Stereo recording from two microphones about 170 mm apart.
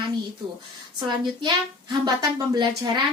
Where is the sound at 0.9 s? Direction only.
25° right (ahead or behind).